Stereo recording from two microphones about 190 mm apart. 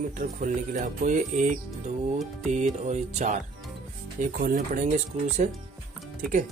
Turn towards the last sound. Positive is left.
turn(degrees=-45)  # may be behind; listen again after turning